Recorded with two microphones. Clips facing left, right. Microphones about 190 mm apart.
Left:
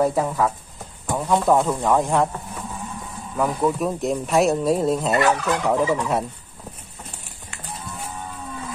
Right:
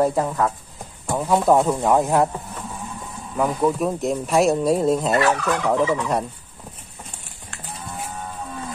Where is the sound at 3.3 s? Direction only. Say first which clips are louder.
Right 1 dB; centre (ahead or behind).